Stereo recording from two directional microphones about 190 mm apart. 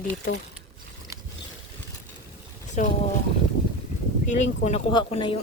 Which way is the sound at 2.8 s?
40° left (ahead or behind).